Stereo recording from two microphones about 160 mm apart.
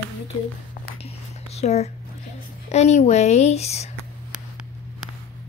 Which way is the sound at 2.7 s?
45° left (ahead or behind).